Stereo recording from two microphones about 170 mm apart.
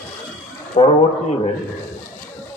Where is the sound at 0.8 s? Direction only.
30° left (ahead or behind).